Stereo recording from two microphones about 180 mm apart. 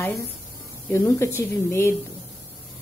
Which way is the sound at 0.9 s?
15° left (ahead or behind).